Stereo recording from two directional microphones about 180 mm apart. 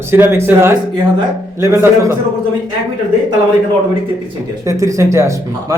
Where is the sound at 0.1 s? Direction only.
10° right (ahead or behind).